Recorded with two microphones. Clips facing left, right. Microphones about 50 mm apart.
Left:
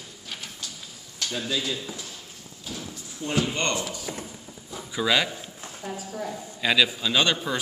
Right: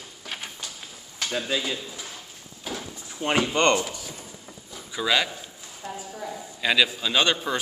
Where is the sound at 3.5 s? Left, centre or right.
Right.